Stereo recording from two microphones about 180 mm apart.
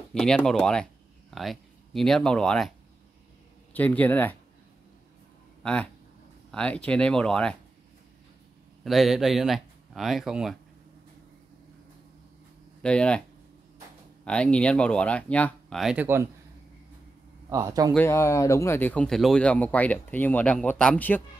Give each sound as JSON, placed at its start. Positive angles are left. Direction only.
{"t": 0.1, "sound": "speech", "side_deg": 5}
{"t": 3.7, "sound": "speech", "side_deg": 10}
{"t": 5.6, "sound": "speech", "side_deg": 5}
{"t": 8.8, "sound": "speech", "side_deg": 0}
{"t": 12.8, "sound": "speech", "side_deg": 5}
{"t": 14.2, "sound": "speech", "side_deg": 5}
{"t": 17.5, "sound": "a man's voice", "side_deg": -20}
{"t": 17.9, "sound": "speech", "side_deg": 15}